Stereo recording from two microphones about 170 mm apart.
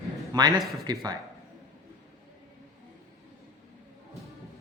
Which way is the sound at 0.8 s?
25° right (ahead or behind).